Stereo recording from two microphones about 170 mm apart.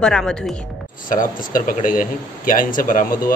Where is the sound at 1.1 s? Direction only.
55° left (ahead or behind).